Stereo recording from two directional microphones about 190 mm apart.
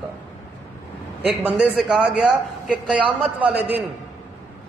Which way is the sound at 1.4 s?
5° right (ahead or behind).